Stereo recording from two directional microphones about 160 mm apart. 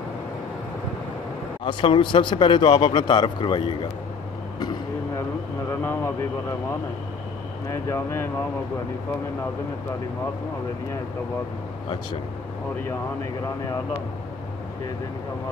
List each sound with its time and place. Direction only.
1.6 s a man's voice: 30° left (ahead or behind)
4.6 s vehicle: 25° left (ahead or behind)
5.7 s a sound: 15° left (ahead or behind)
7.7 s speech: 15° left (ahead or behind)